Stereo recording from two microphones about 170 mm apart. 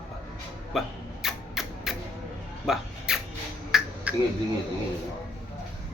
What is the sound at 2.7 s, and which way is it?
Speech, 5° right (ahead or behind).